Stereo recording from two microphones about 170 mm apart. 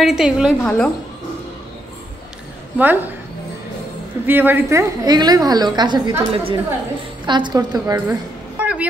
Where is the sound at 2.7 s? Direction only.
10° right (ahead or behind).